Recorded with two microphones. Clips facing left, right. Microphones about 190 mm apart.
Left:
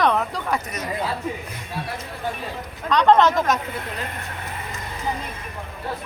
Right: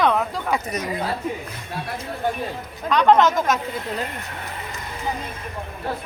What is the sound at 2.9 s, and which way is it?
Speech, 5° right (ahead or behind).